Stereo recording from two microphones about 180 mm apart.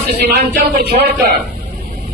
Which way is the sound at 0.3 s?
60° right (ahead or behind).